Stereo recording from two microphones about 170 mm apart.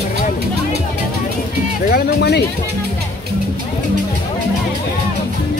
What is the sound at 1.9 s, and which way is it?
Speech, 75° left (ahead or behind).